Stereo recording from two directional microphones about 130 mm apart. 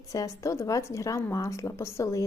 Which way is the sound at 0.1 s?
25° left (ahead or behind).